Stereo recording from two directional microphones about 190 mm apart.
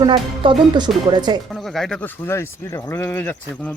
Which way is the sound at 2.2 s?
15° left (ahead or behind).